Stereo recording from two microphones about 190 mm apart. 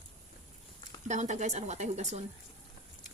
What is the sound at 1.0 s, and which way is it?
Speech, 40° right (ahead or behind).